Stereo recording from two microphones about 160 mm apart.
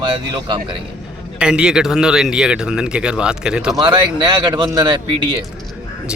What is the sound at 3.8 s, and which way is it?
Speech, 30° right (ahead or behind).